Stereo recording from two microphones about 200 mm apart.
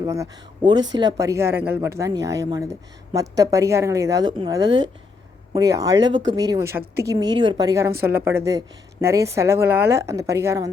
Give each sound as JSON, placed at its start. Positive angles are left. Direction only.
{"t": 0.0, "sound": "a woman's voice", "side_deg": -15}